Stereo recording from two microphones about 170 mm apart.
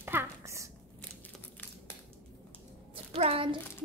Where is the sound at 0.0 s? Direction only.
15° right (ahead or behind).